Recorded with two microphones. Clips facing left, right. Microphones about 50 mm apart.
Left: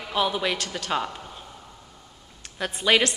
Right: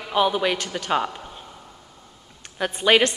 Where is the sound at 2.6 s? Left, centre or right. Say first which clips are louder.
Right 3 dB; centre.